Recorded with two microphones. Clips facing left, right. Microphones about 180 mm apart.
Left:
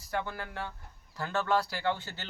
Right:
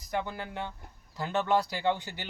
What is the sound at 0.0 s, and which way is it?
Speech, 20° right (ahead or behind).